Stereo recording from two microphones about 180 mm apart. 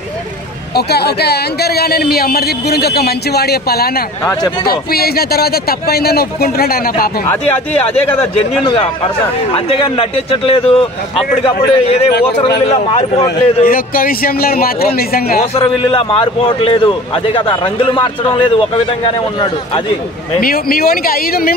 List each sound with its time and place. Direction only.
0.7 s a man's voice: 65° left (ahead or behind)
4.2 s speech: 15° left (ahead or behind)
4.6 s a man's voice: 60° left (ahead or behind)
7.9 s a man's voice: 30° left (ahead or behind)
13.7 s a man's voice: 55° left (ahead or behind)
15.5 s a man's voice: 30° left (ahead or behind)
20.3 s a man's voice: 55° left (ahead or behind)